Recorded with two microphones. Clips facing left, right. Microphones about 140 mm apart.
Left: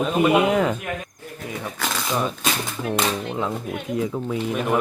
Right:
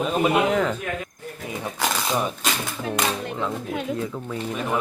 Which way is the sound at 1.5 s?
15° right (ahead or behind).